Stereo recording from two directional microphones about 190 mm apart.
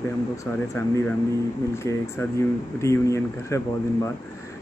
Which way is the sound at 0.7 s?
15° left (ahead or behind).